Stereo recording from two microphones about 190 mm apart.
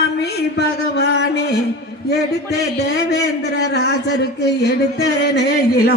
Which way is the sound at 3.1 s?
60° left (ahead or behind).